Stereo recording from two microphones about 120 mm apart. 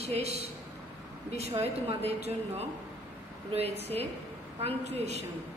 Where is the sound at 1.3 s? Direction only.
55° right (ahead or behind).